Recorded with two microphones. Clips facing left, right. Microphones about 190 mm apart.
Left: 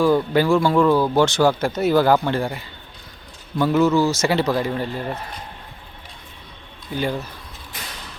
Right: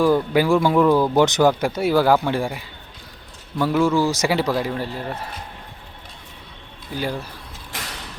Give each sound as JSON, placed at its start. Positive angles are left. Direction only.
{"t": 0.0, "sound": "speech", "side_deg": -10}
{"t": 6.9, "sound": "speech", "side_deg": -5}